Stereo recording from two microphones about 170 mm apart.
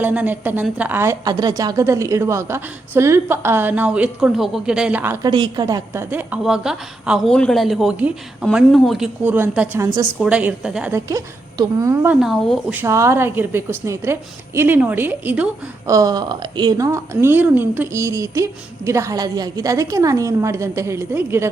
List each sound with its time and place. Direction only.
0.0 s a woman's voice: 10° right (ahead or behind)
5.2 s a woman's voice: 25° right (ahead or behind)
10.2 s a woman's voice: 5° right (ahead or behind)
11.1 s a woman's voice: 20° right (ahead or behind)
12.2 s a woman's voice: centre (ahead or behind)
12.7 s a woman's voice: 15° right (ahead or behind)